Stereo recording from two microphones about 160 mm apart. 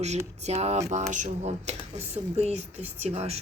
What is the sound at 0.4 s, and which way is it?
Speech, 45° right (ahead or behind).